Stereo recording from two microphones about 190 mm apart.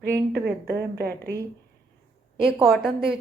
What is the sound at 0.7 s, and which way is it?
Speech, 55° right (ahead or behind).